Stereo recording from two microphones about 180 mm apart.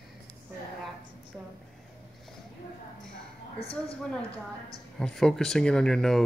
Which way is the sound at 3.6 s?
30° left (ahead or behind).